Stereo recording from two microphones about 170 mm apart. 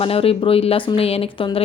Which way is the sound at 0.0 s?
35° left (ahead or behind).